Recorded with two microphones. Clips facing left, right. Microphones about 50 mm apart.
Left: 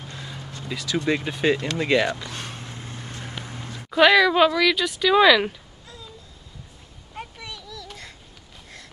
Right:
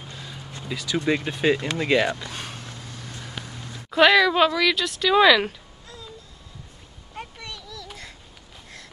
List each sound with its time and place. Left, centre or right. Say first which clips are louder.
0.1 s a sound: left 3 dB; centre
0.7 s speech: even; centre
2.7 s vehicle: left 2 dB; left
3.4 s a sound: left 2 dB; left
3.9 s speech: left 1 dB; centre
7.2 s children playing: even; centre